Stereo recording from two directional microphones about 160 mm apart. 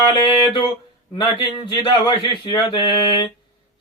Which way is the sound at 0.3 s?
30° left (ahead or behind).